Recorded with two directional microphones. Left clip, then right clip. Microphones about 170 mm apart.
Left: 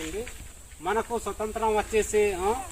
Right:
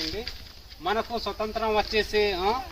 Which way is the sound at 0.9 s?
20° right (ahead or behind).